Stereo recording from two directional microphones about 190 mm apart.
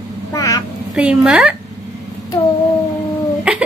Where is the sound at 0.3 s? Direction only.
15° left (ahead or behind).